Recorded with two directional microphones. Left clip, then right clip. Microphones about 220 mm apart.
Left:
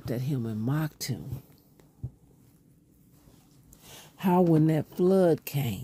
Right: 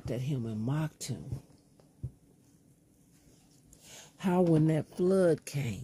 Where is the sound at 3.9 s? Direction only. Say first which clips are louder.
Left 5 dB; 25° left (ahead or behind).